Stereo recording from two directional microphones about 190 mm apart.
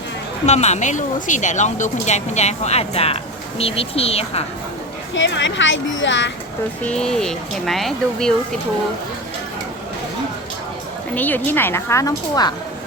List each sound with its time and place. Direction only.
0.4 s speech: 35° left (ahead or behind)
5.1 s speech: 75° left (ahead or behind)
6.8 s speech: 5° left (ahead or behind)
11.1 s a woman's voice: 10° left (ahead or behind)